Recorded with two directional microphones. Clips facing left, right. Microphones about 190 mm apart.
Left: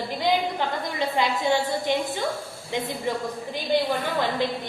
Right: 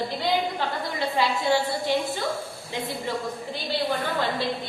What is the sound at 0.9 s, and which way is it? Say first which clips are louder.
A woman's voice: even; 20° left (ahead or behind).